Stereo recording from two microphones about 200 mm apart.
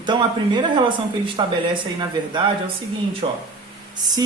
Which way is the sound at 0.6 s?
25° right (ahead or behind).